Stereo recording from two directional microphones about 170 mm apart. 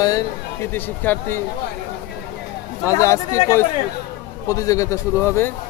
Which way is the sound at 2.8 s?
15° left (ahead or behind).